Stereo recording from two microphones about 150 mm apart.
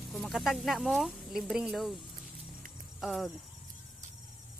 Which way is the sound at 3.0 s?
Centre (ahead or behind).